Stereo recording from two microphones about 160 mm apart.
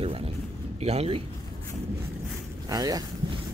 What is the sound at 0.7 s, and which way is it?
Speech, 40° right (ahead or behind).